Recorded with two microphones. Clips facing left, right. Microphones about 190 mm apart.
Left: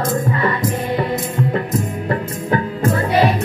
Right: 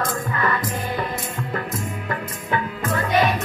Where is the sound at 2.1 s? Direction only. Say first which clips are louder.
Left 7 dB; 35° left (ahead or behind).